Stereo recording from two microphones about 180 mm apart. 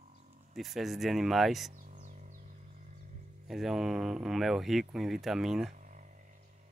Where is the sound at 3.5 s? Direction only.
Centre (ahead or behind).